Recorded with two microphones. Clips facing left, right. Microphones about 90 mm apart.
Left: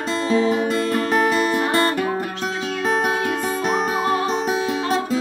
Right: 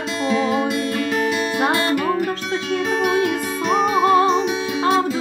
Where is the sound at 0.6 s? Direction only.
40° left (ahead or behind).